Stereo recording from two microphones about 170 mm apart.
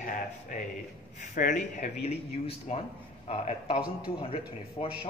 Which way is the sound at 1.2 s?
50° left (ahead or behind).